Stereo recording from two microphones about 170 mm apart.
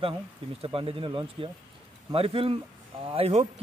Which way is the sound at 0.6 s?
35° right (ahead or behind).